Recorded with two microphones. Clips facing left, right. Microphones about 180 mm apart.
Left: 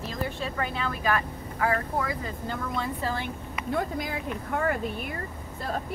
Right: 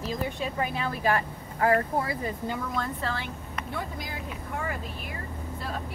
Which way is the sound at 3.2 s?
50° left (ahead or behind).